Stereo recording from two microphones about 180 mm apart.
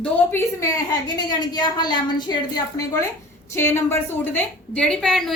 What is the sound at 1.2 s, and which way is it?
A woman's voice, 25° left (ahead or behind).